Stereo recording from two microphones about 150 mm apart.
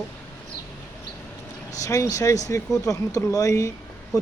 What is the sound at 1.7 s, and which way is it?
Speech, 20° left (ahead or behind).